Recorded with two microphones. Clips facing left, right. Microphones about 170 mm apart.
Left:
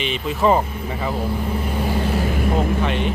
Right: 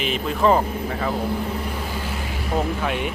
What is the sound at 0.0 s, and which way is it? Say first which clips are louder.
Speech: left 1 dB; centre (ahead or behind).